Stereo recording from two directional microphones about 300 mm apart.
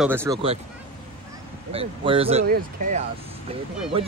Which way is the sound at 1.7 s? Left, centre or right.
Centre.